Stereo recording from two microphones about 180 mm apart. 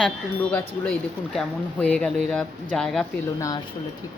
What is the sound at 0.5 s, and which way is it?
Speech, 5° left (ahead or behind).